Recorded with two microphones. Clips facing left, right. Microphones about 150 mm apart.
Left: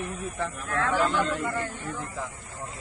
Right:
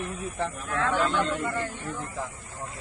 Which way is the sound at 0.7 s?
Centre (ahead or behind).